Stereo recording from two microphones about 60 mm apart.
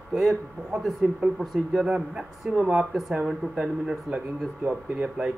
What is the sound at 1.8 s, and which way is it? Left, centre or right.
A man's voice, centre.